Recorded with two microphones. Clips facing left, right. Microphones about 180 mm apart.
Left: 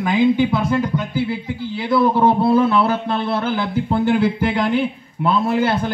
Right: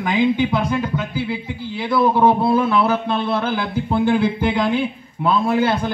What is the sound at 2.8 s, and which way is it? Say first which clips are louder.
A man's voice: even; 15° right (ahead or behind).